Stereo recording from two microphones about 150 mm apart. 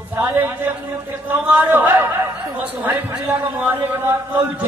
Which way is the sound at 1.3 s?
15° right (ahead or behind).